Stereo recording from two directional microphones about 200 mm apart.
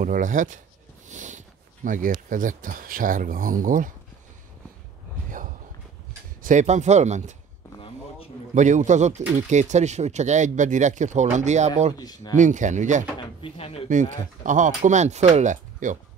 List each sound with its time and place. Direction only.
0.0 s speech: 40° right (ahead or behind)
1.0 s a sound: 40° right (ahead or behind)
1.9 s speech: 40° right (ahead or behind)
6.4 s speech: 35° right (ahead or behind)
7.7 s a sound: 25° left (ahead or behind)
8.5 s speech: 40° right (ahead or behind)
12.0 s speech: 20° left (ahead or behind)
12.4 s speech: 40° right (ahead or behind)
13.2 s speech: 30° left (ahead or behind)
13.8 s speech: 40° right (ahead or behind)